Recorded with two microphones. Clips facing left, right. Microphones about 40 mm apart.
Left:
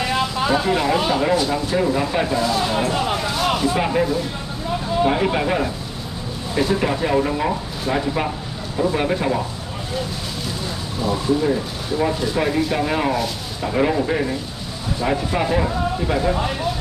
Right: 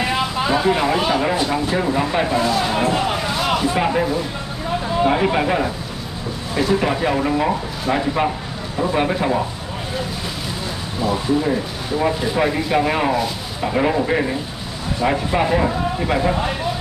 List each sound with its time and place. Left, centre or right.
0.5 s speech: centre
3.3 s speech: centre
11.0 s speech: centre